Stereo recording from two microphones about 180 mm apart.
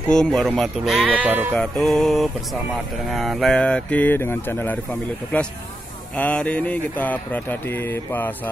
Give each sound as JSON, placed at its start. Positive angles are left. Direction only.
{"t": 0.1, "sound": "speech", "side_deg": 5}
{"t": 1.5, "sound": "speech", "side_deg": 5}